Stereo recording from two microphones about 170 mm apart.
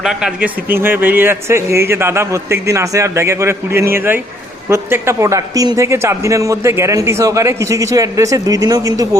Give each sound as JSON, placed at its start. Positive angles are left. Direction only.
{"t": 0.0, "sound": "a man's voice", "side_deg": -5}